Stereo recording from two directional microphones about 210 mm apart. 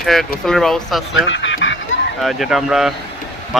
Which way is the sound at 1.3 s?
60° left (ahead or behind).